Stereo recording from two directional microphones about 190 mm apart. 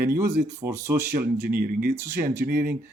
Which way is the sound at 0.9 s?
55° right (ahead or behind).